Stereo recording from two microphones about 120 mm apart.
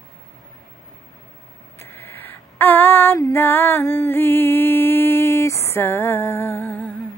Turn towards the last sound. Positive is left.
turn(degrees=10)  # may be behind; listen again after turning